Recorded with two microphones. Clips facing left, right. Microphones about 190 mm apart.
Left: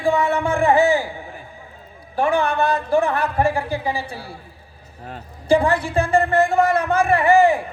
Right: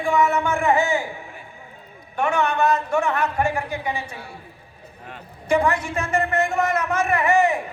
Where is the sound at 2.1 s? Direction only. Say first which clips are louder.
Left 2 dB; 30° left (ahead or behind).